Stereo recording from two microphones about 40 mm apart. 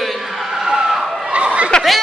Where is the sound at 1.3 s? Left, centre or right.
Right.